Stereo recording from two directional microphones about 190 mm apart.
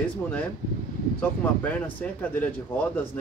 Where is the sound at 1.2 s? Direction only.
10° left (ahead or behind).